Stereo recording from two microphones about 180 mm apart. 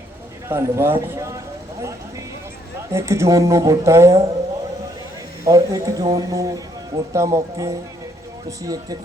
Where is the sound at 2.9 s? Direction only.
15° right (ahead or behind).